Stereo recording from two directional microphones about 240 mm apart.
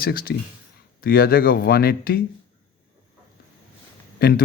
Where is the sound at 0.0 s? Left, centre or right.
Left.